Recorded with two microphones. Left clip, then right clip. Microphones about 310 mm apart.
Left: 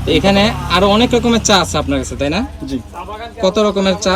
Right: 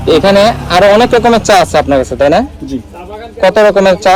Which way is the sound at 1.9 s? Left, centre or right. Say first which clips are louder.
Right 10 dB; centre.